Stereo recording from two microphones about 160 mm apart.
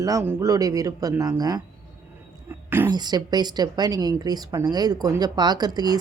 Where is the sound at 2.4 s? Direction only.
15° right (ahead or behind).